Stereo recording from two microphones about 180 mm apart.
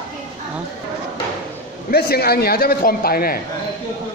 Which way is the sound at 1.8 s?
60° left (ahead or behind).